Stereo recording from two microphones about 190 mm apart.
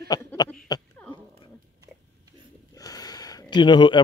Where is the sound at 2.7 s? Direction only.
20° left (ahead or behind).